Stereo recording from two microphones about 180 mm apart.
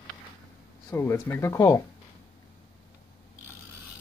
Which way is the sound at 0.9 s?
15° left (ahead or behind).